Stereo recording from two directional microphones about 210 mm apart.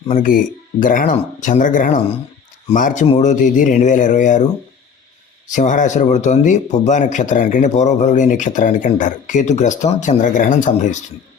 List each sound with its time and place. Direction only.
0.1 s speech: 40° left (ahead or behind)
5.5 s speech: 35° left (ahead or behind)